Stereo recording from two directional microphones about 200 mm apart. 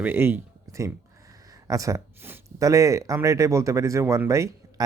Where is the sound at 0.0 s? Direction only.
10° right (ahead or behind).